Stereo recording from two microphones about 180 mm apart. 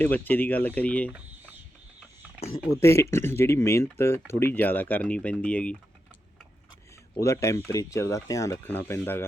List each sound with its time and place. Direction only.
0.0 s speech: 10° left (ahead or behind)
2.8 s speech: 15° left (ahead or behind)
7.2 s speech: 15° left (ahead or behind)